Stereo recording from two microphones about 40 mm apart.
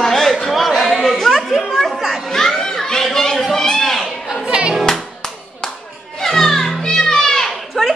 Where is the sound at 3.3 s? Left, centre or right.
Centre.